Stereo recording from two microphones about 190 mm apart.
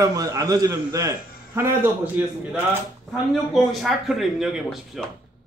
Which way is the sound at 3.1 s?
Centre (ahead or behind).